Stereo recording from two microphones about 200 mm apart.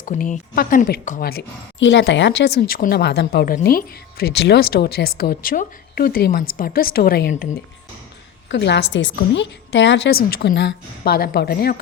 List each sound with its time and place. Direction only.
0.0 s speech: 40° left (ahead or behind)
8.4 s a woman's voice: 60° left (ahead or behind)